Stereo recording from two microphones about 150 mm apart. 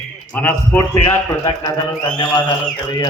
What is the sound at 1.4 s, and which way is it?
A man's voice, 25° left (ahead or behind).